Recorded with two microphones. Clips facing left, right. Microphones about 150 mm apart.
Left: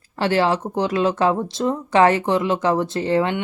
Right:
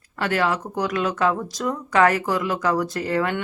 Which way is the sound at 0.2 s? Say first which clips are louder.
Left 4 dB; 30° left (ahead or behind).